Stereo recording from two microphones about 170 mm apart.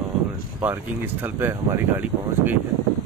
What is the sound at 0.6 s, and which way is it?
Speech, 10° right (ahead or behind).